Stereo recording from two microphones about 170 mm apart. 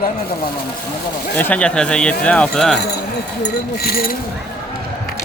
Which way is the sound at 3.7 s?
65° left (ahead or behind).